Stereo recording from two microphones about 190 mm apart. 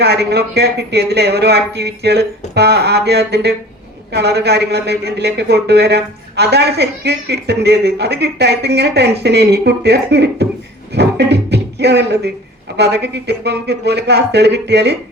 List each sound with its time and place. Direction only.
0.0 s speech: 60° right (ahead or behind)
10.9 s music: 60° right (ahead or behind)
12.7 s speech: 60° right (ahead or behind)